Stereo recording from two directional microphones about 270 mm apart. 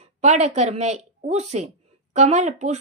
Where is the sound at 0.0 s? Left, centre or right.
Right.